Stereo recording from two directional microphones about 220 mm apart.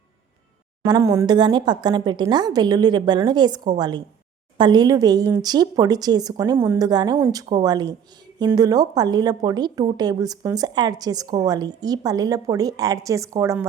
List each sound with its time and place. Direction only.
0.9 s a woman's voice: 15° right (ahead or behind)